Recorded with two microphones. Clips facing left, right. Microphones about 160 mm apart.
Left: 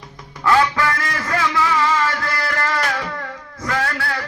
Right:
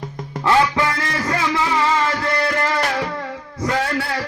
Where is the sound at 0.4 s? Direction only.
25° right (ahead or behind).